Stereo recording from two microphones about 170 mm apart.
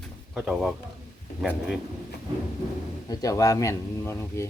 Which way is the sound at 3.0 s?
20° left (ahead or behind).